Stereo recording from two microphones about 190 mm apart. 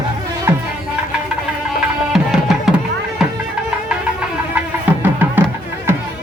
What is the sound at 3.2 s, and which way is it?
Music, 5° right (ahead or behind).